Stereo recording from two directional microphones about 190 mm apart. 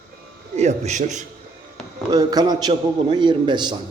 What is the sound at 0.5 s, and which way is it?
Speech, 35° right (ahead or behind).